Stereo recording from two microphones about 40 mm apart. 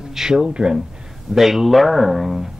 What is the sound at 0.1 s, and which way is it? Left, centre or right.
Speech, centre.